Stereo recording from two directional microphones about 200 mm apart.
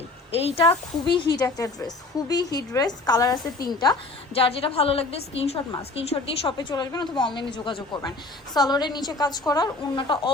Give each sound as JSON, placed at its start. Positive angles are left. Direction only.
{"t": 0.3, "sound": "a woman's voice", "side_deg": 30}
{"t": 1.4, "sound": "a woman's voice", "side_deg": 15}